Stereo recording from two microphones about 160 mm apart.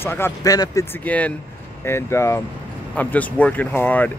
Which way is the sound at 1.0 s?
10° left (ahead or behind).